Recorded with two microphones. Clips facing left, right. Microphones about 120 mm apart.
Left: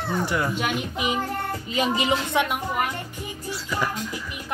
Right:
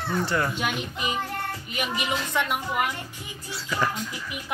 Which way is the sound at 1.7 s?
25° left (ahead or behind).